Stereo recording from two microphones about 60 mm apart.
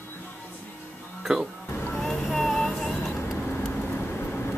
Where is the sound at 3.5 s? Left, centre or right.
Left.